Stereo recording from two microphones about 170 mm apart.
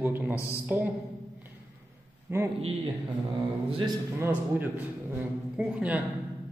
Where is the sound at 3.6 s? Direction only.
30° right (ahead or behind).